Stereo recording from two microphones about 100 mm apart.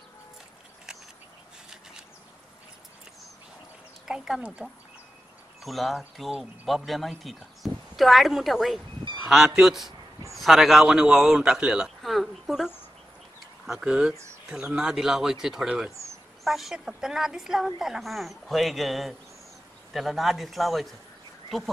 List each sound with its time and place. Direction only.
4.1 s speech: 5° right (ahead or behind)
5.6 s speech: centre (ahead or behind)